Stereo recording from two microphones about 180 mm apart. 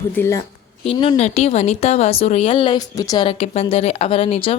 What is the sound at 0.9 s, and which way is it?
A woman's voice, 30° left (ahead or behind).